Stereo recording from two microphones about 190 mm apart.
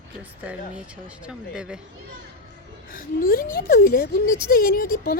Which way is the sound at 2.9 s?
50° left (ahead or behind).